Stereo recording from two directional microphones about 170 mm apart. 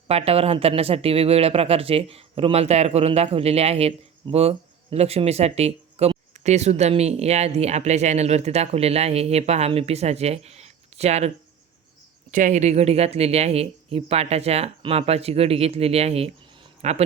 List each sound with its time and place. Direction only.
0.1 s speech: 35° right (ahead or behind)
12.3 s speech: 45° right (ahead or behind)